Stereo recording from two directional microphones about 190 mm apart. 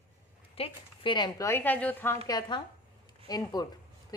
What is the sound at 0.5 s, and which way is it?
A woman's voice, 30° left (ahead or behind).